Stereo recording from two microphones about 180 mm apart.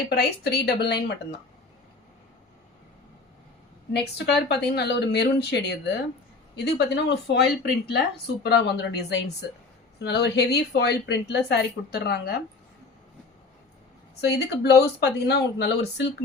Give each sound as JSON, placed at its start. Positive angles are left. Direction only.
{"t": 0.1, "sound": "a woman's voice", "side_deg": 60}
{"t": 4.4, "sound": "a woman's voice", "side_deg": 65}
{"t": 14.2, "sound": "speech", "side_deg": 65}